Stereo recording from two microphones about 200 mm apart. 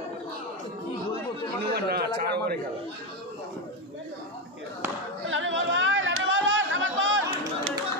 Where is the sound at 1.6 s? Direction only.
55° right (ahead or behind).